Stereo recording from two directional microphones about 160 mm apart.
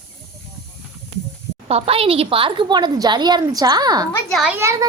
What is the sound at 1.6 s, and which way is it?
A woman's voice, 40° right (ahead or behind).